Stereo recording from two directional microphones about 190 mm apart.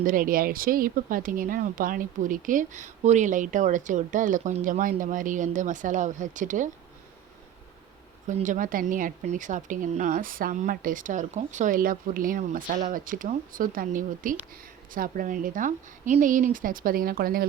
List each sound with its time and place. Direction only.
0.0 s speech: 45° right (ahead or behind)
8.3 s speech: 40° right (ahead or behind)